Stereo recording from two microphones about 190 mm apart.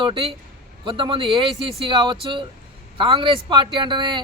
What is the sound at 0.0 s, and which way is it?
A man's voice, 25° right (ahead or behind).